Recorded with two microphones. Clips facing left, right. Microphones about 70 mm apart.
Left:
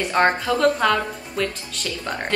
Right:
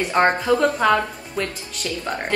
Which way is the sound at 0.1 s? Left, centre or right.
Centre.